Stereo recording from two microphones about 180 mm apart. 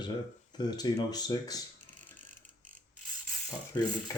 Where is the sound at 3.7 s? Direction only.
20° left (ahead or behind).